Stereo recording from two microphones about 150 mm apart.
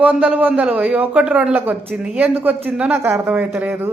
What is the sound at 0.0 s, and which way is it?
A man's voice, 5° right (ahead or behind).